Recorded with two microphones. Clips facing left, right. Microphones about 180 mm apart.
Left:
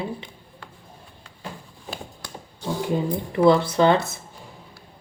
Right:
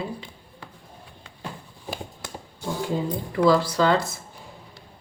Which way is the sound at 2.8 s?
20° left (ahead or behind).